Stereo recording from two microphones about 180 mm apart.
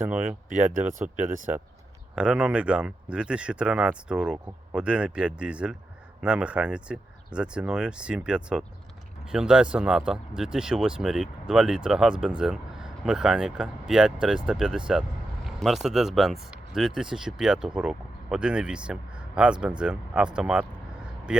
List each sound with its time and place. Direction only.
0.5 s speech: 45° right (ahead or behind)
2.1 s speech: 5° right (ahead or behind)